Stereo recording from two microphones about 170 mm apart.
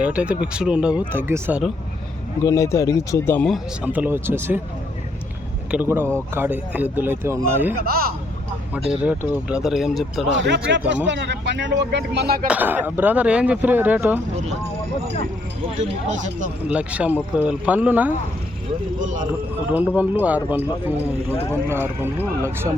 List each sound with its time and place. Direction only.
0.0 s speech: 5° right (ahead or behind)
2.4 s speech: 20° left (ahead or behind)
3.4 s speech: 5° right (ahead or behind)
5.7 s speech: 10° right (ahead or behind)
7.8 s speech: 60° right (ahead or behind)
8.7 s speech: 10° right (ahead or behind)
10.3 s speech: 90° right; by 12.5 s 65° right (ahead or behind)
12.5 s speech: 10° right (ahead or behind)
16.0 s speech: 45° right (ahead or behind)
16.6 s speech: 5° right (ahead or behind)
18.9 s speech: 50° right (ahead or behind)
20.0 s speech: 10° right (ahead or behind)